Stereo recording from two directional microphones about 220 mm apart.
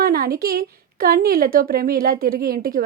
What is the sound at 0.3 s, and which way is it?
Speech, 45° right (ahead or behind).